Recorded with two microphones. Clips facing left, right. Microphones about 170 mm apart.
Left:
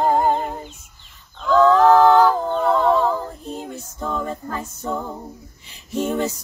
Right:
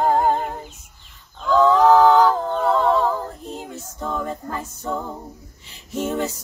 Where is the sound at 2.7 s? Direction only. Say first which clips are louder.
Left 1 dB; 10° left (ahead or behind).